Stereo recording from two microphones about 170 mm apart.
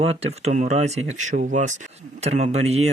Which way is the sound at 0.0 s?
35° right (ahead or behind).